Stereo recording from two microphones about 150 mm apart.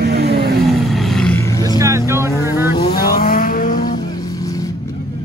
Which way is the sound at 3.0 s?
75° left (ahead or behind).